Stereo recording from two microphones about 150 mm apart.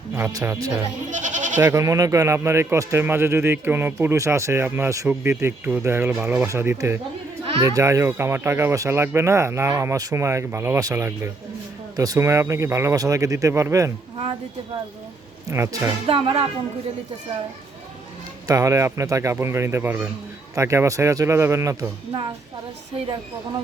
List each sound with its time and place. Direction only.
0.1 s speech: 15° right (ahead or behind)
1.1 s goat: 55° right (ahead or behind)
1.5 s speech: 20° right (ahead or behind)
15.4 s speech: 20° right (ahead or behind)
16.0 s speech: 40° right (ahead or behind)
18.4 s speech: 20° right (ahead or behind)